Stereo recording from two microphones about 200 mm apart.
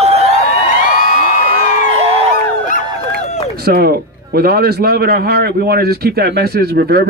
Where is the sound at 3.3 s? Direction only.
30° left (ahead or behind).